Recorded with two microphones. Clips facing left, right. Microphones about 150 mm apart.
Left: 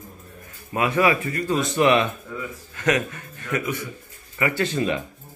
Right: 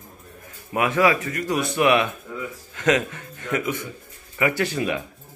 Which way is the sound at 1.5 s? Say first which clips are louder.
Left 1 dB; 5° right (ahead or behind).